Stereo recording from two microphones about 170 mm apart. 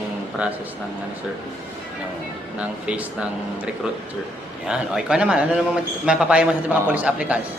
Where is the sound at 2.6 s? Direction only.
5° right (ahead or behind).